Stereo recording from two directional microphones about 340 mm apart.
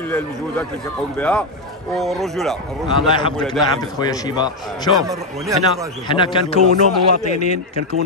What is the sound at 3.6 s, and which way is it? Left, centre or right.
Speech, centre.